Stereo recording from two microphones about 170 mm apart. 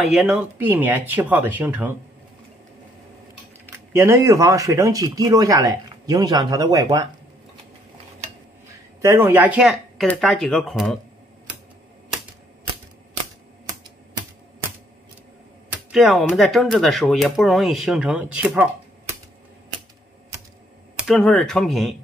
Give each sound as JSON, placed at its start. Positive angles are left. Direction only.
{"t": 0.0, "sound": "speech", "side_deg": 0}
{"t": 3.9, "sound": "speech", "side_deg": -15}
{"t": 9.0, "sound": "speech", "side_deg": -15}
{"t": 15.7, "sound": "speech", "side_deg": -5}
{"t": 21.1, "sound": "speech", "side_deg": 10}